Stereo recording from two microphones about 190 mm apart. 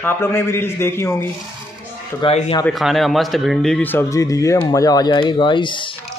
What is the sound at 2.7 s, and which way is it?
A man's voice, centre (ahead or behind).